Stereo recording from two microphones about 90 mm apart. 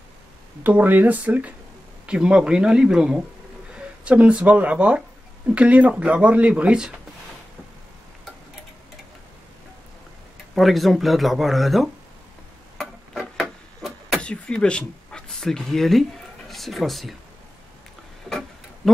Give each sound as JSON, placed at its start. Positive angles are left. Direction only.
{"t": 0.7, "sound": "speech", "side_deg": -20}
{"t": 10.5, "sound": "speech", "side_deg": 0}
{"t": 12.7, "sound": "a sound", "side_deg": -5}
{"t": 14.2, "sound": "speech", "side_deg": 10}